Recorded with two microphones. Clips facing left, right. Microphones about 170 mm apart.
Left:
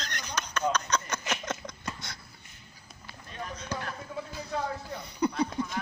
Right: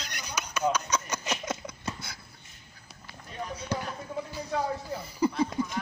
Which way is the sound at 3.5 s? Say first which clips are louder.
Right 3 dB; 10° right (ahead or behind).